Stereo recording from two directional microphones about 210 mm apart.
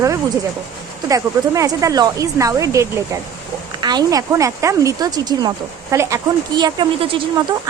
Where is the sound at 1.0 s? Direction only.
15° right (ahead or behind).